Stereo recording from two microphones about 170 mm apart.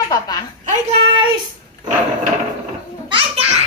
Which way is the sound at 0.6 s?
40° right (ahead or behind).